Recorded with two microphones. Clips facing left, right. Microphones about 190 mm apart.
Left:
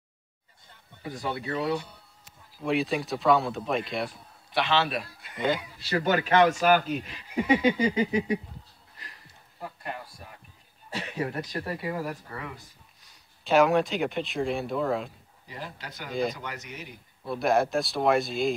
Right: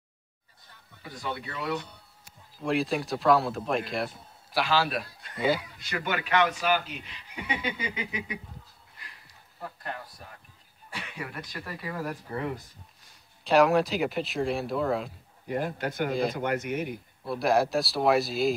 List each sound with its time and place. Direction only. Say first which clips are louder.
1.2 s speech: left 4 dB; 40° left (ahead or behind)
2.6 s speech: left 1 dB; centre (ahead or behind)
5.8 s speech: left 6 dB; 35° left (ahead or behind)
9.6 s speech: left 1 dB; 5° left (ahead or behind)
10.9 s speech: left 7 dB; 40° left (ahead or behind)
12.3 s speech: right 6 dB; 20° right (ahead or behind)
13.4 s speech: even; centre (ahead or behind)
15.4 s a man's voice: right 11 dB; 55° right (ahead or behind)
16.1 s speech: left 2 dB; centre (ahead or behind)
16.3 s speech: right 11 dB; 55° right (ahead or behind)
17.2 s speech: even; centre (ahead or behind)